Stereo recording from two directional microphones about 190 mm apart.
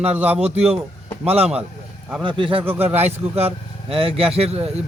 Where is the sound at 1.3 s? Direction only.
30° right (ahead or behind).